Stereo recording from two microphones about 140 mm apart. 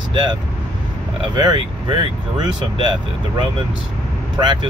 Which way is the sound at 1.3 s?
30° right (ahead or behind).